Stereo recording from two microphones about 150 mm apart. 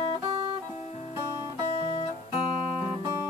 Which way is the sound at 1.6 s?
40° left (ahead or behind).